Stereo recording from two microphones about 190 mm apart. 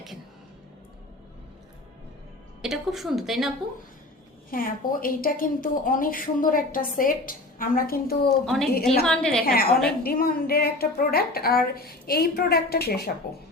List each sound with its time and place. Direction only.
2.6 s a woman's voice: centre (ahead or behind)
4.5 s a woman's voice: 50° left (ahead or behind)
8.4 s a woman's voice: centre (ahead or behind)
9.5 s a woman's voice: 50° left (ahead or behind)